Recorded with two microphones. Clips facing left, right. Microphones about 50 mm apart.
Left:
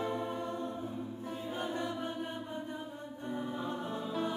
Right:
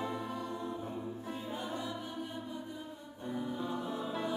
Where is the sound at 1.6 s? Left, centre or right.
Left.